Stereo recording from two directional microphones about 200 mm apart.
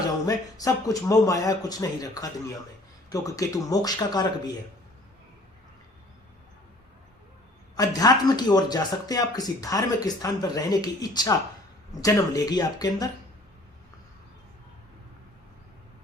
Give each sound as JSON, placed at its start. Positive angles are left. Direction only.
{"t": 0.3, "sound": "speech", "side_deg": 15}
{"t": 7.8, "sound": "speech", "side_deg": 20}